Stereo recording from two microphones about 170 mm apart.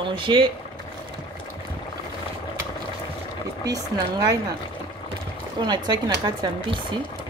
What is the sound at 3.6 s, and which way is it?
Speech, 20° right (ahead or behind).